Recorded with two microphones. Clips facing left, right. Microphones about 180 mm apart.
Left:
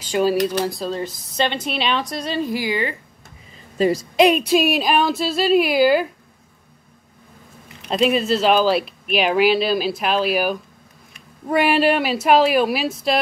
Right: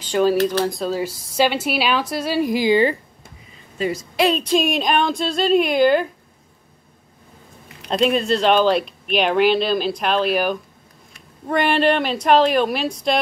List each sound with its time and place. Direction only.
0.1 s speech: 10° left (ahead or behind)
0.7 s a woman's voice: 5° right (ahead or behind); by 3.0 s 30° right (ahead or behind)
3.7 s a woman's voice: 40° left (ahead or behind)
4.2 s a woman's voice: 10° left (ahead or behind)
7.9 s a woman's voice: 5° left (ahead or behind)